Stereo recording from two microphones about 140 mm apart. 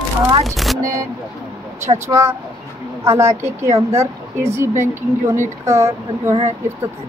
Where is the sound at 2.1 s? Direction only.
20° right (ahead or behind).